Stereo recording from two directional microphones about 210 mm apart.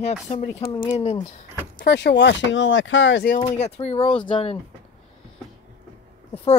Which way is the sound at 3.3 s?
30° left (ahead or behind).